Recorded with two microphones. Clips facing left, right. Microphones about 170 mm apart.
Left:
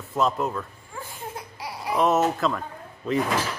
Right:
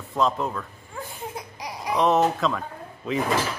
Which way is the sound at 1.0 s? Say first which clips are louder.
Right 1 dB; 15° right (ahead or behind).